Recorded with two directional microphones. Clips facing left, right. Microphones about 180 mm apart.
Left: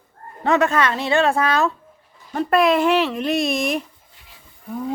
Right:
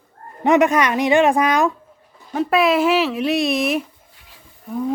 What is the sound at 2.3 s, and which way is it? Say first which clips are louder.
Speech: even; centre (ahead or behind).